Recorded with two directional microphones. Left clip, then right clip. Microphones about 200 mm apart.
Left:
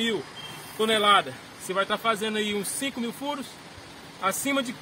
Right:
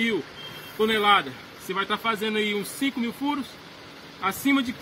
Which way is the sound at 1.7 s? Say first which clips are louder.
Left 1 dB; 25° left (ahead or behind).